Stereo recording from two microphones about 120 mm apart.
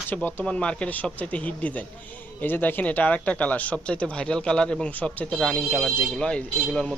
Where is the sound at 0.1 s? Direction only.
15° left (ahead or behind).